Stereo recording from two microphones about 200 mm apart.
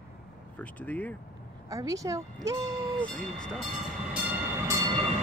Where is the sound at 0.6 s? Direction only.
5° left (ahead or behind).